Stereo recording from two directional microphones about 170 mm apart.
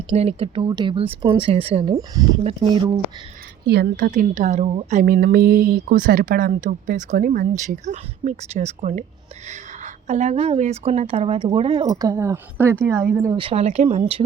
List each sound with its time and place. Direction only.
0.1 s a woman's voice: 35° right (ahead or behind)
2.0 s speech: 20° right (ahead or behind)
2.4 s a woman's voice: 35° right (ahead or behind)
3.7 s a woman's voice: 65° right (ahead or behind); by 5.0 s 40° right (ahead or behind)
5.0 s a woman's voice: 60° right (ahead or behind); by 13.1 s 15° right (ahead or behind)
13.3 s a woman's voice: 35° right (ahead or behind)